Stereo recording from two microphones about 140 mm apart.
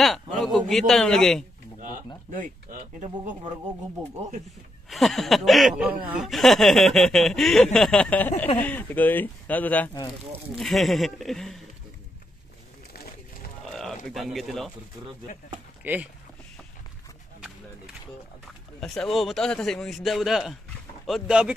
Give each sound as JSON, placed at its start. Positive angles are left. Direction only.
{"t": 0.4, "sound": "speech", "side_deg": 0}
{"t": 2.4, "sound": "speech", "side_deg": -70}
{"t": 4.8, "sound": "speech", "side_deg": 0}
{"t": 10.5, "sound": "speech", "side_deg": 0}
{"t": 13.7, "sound": "speech", "side_deg": 0}
{"t": 15.8, "sound": "speech", "side_deg": -10}
{"t": 18.8, "sound": "speech", "side_deg": 0}